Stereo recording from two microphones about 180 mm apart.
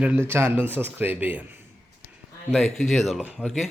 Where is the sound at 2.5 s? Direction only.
Centre (ahead or behind).